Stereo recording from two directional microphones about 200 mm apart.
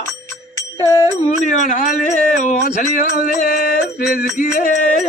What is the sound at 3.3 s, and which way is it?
Mantra, 45° left (ahead or behind).